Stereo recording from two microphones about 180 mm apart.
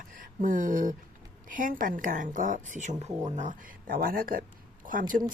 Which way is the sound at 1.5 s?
50° right (ahead or behind).